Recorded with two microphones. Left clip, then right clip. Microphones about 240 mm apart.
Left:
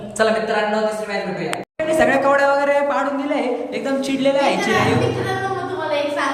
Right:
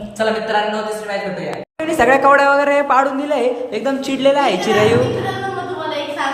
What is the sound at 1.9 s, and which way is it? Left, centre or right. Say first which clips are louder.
A woman's voice: right 4 dB; centre.